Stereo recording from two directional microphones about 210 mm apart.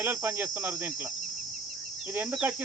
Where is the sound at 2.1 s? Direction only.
5° right (ahead or behind).